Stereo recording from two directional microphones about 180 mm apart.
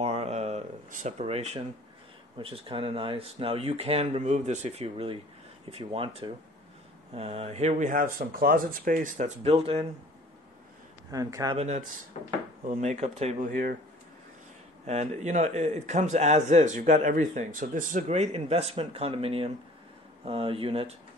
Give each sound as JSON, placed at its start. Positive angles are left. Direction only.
{"t": 0.0, "sound": "a sound", "side_deg": -35}
{"t": 2.3, "sound": "a man's voice", "side_deg": -30}
{"t": 11.1, "sound": "a man's voice", "side_deg": -20}
{"t": 11.5, "sound": "a man's voice", "side_deg": -40}
{"t": 14.9, "sound": "a man's voice", "side_deg": -40}